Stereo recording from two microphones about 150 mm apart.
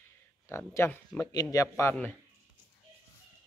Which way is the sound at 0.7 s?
15° left (ahead or behind).